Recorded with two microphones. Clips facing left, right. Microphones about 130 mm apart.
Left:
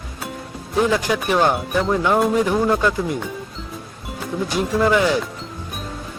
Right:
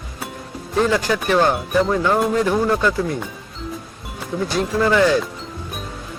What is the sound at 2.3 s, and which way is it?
Speech, 15° left (ahead or behind).